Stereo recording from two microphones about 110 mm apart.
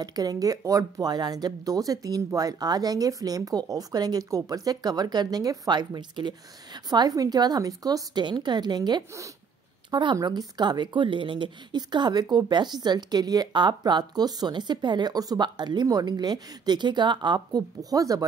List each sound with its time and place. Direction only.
0.0 s speech: 35° right (ahead or behind)